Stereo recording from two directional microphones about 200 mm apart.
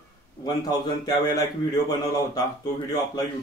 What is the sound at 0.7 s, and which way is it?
Speech, 20° left (ahead or behind).